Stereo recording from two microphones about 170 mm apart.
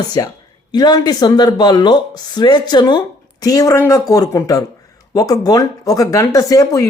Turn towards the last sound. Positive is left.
turn(degrees=20)  # may be behind; listen again after turning